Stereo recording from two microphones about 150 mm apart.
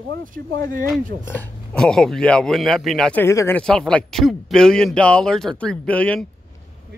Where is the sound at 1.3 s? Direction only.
10° left (ahead or behind).